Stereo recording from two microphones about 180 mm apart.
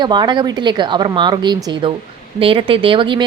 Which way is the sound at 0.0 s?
25° right (ahead or behind).